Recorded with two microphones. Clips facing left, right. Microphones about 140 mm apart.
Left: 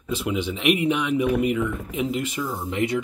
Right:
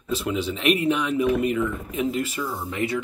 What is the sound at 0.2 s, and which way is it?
Speech, 15° left (ahead or behind).